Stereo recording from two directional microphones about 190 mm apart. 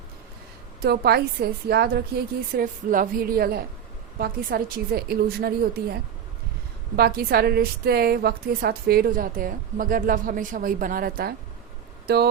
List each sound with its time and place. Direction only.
0.8 s a woman's voice: 55° right (ahead or behind)